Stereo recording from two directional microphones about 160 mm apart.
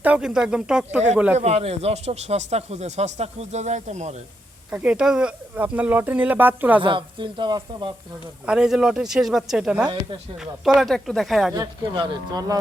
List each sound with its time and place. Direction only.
0.0 s speech: 5° right (ahead or behind)
1.4 s speech: 40° right (ahead or behind)
4.7 s speech: 5° right (ahead or behind)
6.8 s speech: 30° right (ahead or behind)
8.4 s speech: 5° right (ahead or behind)
11.5 s speech: 25° right (ahead or behind)